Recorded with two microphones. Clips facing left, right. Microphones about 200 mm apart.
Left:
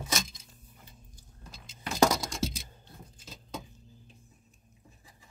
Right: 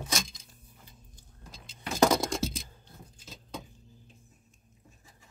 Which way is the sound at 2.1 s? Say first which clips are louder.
Right 6 dB; 55° right (ahead or behind).